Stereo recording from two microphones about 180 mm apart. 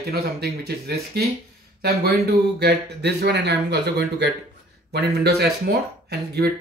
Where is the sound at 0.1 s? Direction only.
60° right (ahead or behind).